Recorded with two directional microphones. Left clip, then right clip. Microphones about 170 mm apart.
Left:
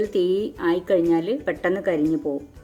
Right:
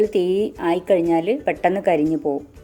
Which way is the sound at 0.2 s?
55° right (ahead or behind).